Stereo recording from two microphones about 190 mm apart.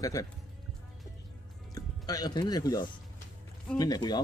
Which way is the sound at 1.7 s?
20° left (ahead or behind).